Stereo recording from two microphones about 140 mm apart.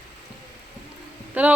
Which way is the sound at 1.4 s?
10° right (ahead or behind).